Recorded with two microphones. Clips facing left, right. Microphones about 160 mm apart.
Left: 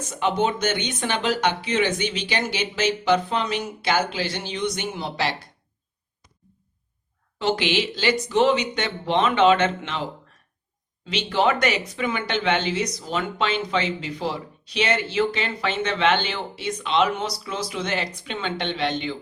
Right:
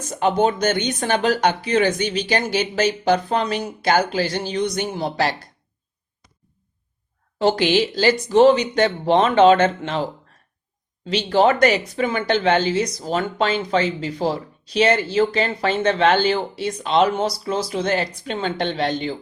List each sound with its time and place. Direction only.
0.1 s speech: 40° right (ahead or behind)
7.3 s speech: 40° right (ahead or behind)
11.0 s speech: 40° right (ahead or behind)